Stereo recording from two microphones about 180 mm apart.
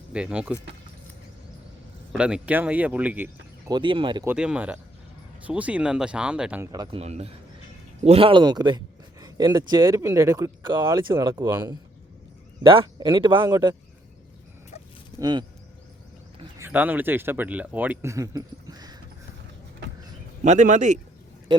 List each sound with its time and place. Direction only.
0.1 s speech: 5° right (ahead or behind)
2.1 s speech: 5° right (ahead or behind)
3.7 s speech: 25° right (ahead or behind)
4.3 s speech: 5° right (ahead or behind)
6.7 s speech: 20° right (ahead or behind)
7.0 s speech: 35° right (ahead or behind)
15.2 s speech: 25° right (ahead or behind)
16.6 s speech: 10° right (ahead or behind)
20.4 s speech: 45° right (ahead or behind)